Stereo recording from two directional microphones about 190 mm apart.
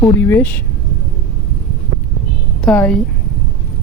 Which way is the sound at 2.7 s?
5° left (ahead or behind).